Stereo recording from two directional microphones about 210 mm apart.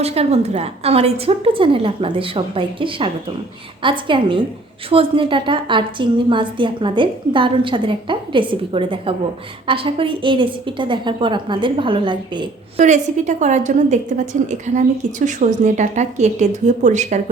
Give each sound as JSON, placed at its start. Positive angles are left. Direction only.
{"t": 0.0, "sound": "a woman's voice", "side_deg": -30}
{"t": 12.8, "sound": "a woman's voice", "side_deg": -35}